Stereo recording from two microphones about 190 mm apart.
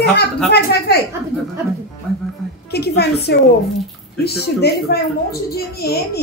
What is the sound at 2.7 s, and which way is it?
A woman's voice, 60° left (ahead or behind).